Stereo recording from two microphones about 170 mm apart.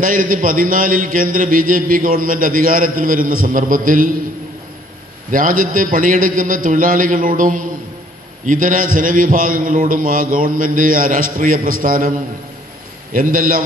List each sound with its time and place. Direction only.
0.0 s a man's voice: 55° right (ahead or behind)
5.3 s a man's voice: 55° right (ahead or behind)
13.1 s a man's voice: 55° right (ahead or behind)